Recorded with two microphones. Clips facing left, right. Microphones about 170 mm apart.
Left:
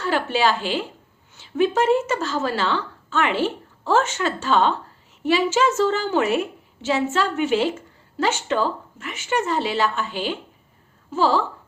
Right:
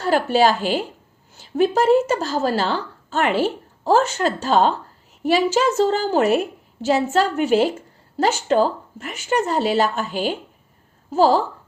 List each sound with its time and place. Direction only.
0.0 s a woman's voice: 40° right (ahead or behind)